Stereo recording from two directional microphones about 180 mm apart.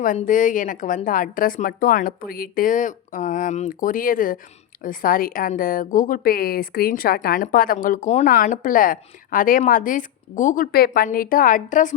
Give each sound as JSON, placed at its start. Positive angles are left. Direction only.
{"t": 0.0, "sound": "a woman's voice", "side_deg": 45}